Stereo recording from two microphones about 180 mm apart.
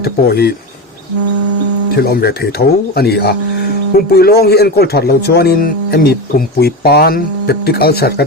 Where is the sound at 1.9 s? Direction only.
60° left (ahead or behind).